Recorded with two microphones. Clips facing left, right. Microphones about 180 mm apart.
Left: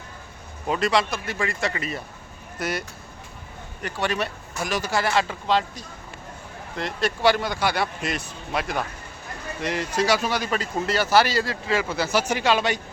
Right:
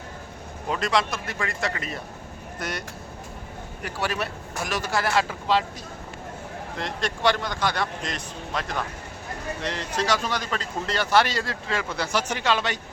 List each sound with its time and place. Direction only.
0.7 s speech: centre (ahead or behind)
3.8 s speech: 5° right (ahead or behind)
6.7 s speech: 5° left (ahead or behind)